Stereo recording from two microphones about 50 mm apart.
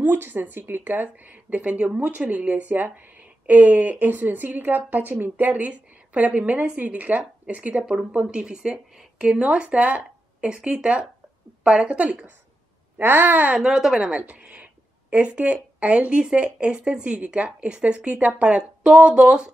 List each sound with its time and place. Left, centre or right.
0.0 s a woman's voice: right
5.7 s a woman's voice: right
13.0 s a child's voice: right
13.6 s a woman's voice: centre
14.1 s a woman's voice: right